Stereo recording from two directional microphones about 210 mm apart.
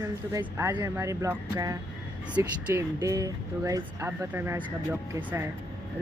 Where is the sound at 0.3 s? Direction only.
15° right (ahead or behind).